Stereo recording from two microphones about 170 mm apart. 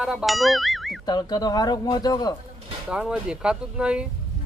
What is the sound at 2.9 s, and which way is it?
Speech, 5° right (ahead or behind).